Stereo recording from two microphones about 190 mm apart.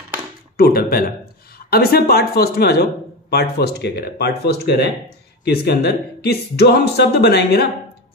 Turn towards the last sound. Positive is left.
turn(degrees=60)  # may be behind; listen again after turning